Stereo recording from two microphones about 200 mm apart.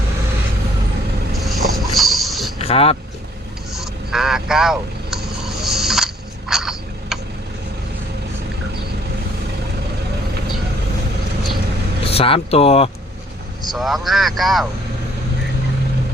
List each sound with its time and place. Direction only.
1.3 s a sound: centre (ahead or behind)
2.6 s speech: 30° left (ahead or behind)
3.8 s vehicle: centre (ahead or behind)
6.5 s a sound: centre (ahead or behind)
12.0 s speech: 30° left (ahead or behind)
13.7 s speech: centre (ahead or behind)